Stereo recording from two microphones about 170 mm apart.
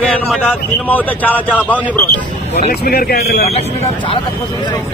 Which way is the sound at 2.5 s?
65° left (ahead or behind).